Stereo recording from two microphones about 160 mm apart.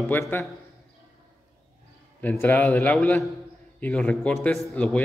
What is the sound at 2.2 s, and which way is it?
A man's voice, 10° left (ahead or behind).